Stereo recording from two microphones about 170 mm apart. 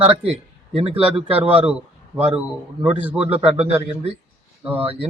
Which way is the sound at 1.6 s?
5° right (ahead or behind).